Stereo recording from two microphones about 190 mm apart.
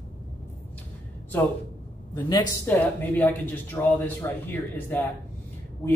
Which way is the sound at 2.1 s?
20° left (ahead or behind).